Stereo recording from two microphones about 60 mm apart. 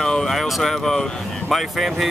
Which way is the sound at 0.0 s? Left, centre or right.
Centre.